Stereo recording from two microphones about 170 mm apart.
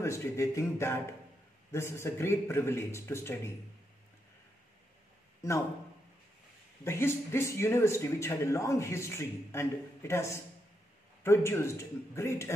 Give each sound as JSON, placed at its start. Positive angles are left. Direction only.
{"t": 0.0, "sound": "a man's voice", "side_deg": 15}
{"t": 6.8, "sound": "a man's voice", "side_deg": 15}